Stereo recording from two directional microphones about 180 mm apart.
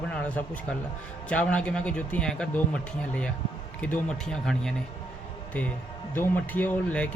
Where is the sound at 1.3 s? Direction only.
5° left (ahead or behind).